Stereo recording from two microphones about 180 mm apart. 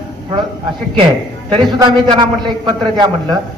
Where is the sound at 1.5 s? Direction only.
25° right (ahead or behind).